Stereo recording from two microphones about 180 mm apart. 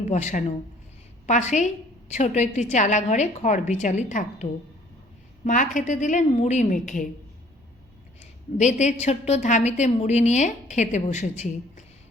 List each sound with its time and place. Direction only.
0.0 s a woman's voice: 40° left (ahead or behind)
5.5 s a woman's voice: 45° left (ahead or behind)
8.2 s a woman's voice: 40° left (ahead or behind)